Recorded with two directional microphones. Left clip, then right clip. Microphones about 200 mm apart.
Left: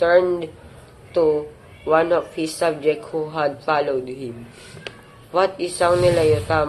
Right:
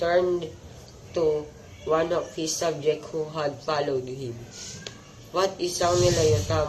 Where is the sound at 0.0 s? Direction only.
20° left (ahead or behind).